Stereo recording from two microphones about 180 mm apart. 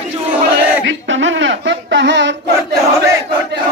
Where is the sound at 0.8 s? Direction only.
90° right.